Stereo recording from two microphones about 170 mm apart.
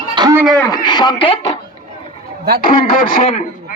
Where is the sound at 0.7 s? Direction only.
25° left (ahead or behind).